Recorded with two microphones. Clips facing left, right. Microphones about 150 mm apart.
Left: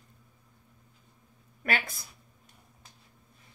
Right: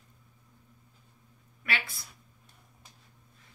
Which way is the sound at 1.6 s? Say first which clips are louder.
Left 4 dB; 45° left (ahead or behind).